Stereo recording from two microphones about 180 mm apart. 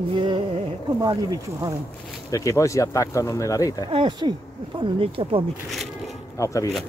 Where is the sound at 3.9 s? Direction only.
25° right (ahead or behind).